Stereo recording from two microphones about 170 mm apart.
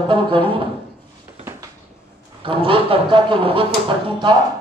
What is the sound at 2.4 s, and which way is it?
Speech, 30° right (ahead or behind).